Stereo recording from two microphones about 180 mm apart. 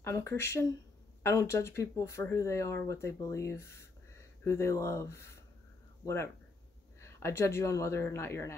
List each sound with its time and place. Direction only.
0.0 s speech: 15° left (ahead or behind)